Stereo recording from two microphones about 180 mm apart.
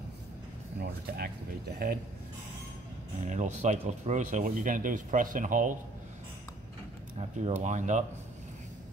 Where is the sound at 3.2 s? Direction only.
40° right (ahead or behind).